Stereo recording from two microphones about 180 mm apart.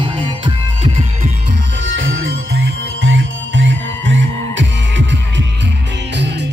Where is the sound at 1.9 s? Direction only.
90° right.